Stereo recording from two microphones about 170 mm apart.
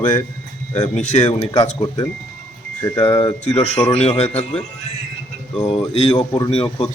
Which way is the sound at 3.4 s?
40° left (ahead or behind).